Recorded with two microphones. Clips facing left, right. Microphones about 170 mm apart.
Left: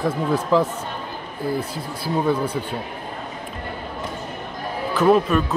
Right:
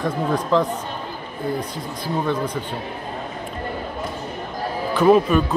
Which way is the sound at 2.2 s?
10° left (ahead or behind).